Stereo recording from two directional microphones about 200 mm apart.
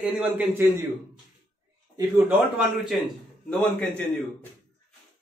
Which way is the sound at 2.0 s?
5° right (ahead or behind).